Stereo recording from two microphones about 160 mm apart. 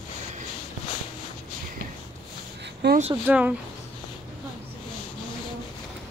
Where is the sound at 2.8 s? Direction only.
90° right.